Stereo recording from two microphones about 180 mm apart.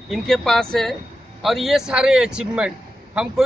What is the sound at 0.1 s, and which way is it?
Speech, centre (ahead or behind).